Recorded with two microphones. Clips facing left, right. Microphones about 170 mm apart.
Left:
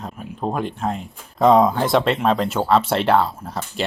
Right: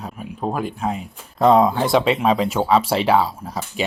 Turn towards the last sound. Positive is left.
turn(degrees=-10)  # may be behind; listen again after turning